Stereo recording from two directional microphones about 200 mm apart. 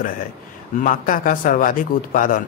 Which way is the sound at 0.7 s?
40° left (ahead or behind).